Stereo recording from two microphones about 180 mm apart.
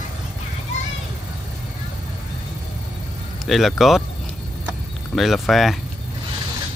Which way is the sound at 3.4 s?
Centre (ahead or behind).